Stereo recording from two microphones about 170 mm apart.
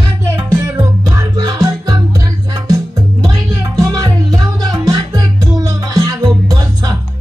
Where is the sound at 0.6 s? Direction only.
20° right (ahead or behind).